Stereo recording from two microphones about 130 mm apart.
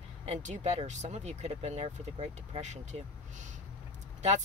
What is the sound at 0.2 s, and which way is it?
Speech, 60° right (ahead or behind).